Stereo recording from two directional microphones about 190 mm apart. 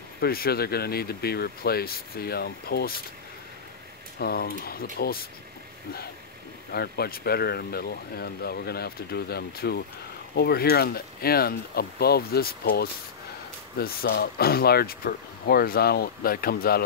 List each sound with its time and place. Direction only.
0.2 s speech: 55° left (ahead or behind)
4.2 s speech: 55° left (ahead or behind)
6.7 s speech: 55° left (ahead or behind)